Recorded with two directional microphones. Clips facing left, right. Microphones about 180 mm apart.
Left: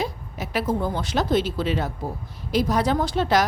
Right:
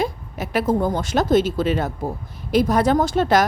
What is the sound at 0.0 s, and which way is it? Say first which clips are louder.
A woman's voice: right 4 dB; 50° right (ahead or behind).